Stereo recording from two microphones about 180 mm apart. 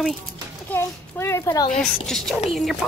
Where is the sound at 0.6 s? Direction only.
15° left (ahead or behind).